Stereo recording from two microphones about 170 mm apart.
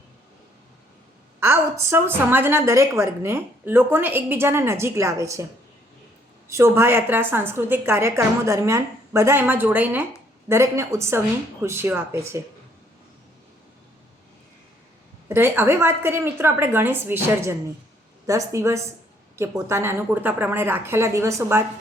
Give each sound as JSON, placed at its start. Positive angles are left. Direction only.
{"t": 1.4, "sound": "a woman's voice", "side_deg": -15}
{"t": 6.5, "sound": "a woman's voice", "side_deg": -15}
{"t": 15.3, "sound": "a woman's voice", "side_deg": -15}